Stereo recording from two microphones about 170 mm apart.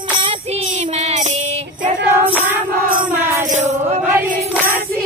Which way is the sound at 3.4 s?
45° right (ahead or behind).